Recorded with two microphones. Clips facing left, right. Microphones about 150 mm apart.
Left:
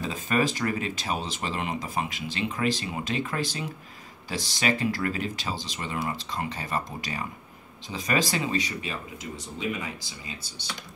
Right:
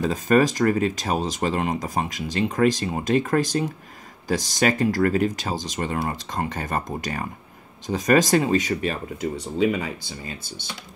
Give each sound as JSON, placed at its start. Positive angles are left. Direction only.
{"t": 0.0, "sound": "speech", "side_deg": -45}